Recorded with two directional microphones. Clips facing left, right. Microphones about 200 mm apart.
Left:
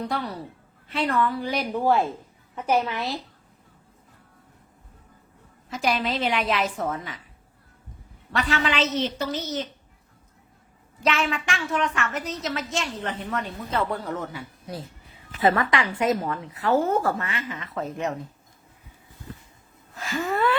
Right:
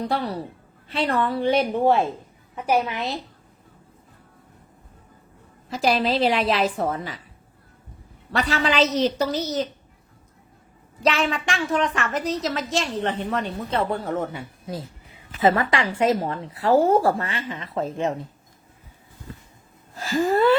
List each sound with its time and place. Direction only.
0.1 s a woman's voice: 35° right (ahead or behind)
2.6 s a woman's voice: 10° right (ahead or behind)
5.6 s a woman's voice: 35° right (ahead or behind)
8.3 s a woman's voice: 35° right (ahead or behind)
11.0 s a woman's voice: 35° right (ahead or behind)
20.0 s a woman's voice: 30° right (ahead or behind)